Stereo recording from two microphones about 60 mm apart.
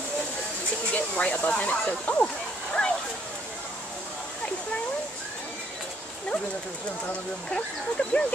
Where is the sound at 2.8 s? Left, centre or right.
Centre.